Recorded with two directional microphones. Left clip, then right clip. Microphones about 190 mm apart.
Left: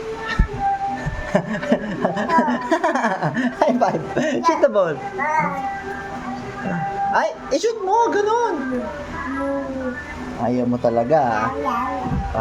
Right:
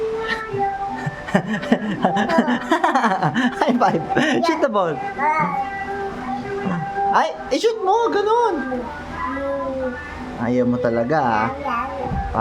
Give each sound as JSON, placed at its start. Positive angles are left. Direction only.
{"t": 1.3, "sound": "speech", "side_deg": -10}
{"t": 7.1, "sound": "speech", "side_deg": -20}
{"t": 7.9, "sound": "speech", "side_deg": -5}
{"t": 10.4, "sound": "speech", "side_deg": -15}